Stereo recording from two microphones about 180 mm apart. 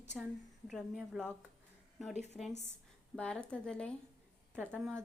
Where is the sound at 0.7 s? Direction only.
Centre (ahead or behind).